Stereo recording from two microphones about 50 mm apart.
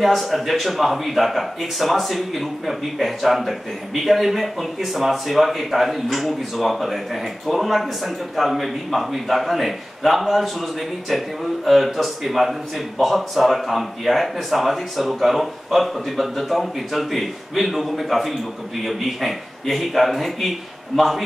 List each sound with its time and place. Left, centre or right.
0.0 s a man's voice: centre